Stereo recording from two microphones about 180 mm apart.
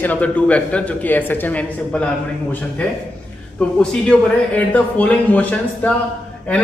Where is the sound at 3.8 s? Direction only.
5° left (ahead or behind).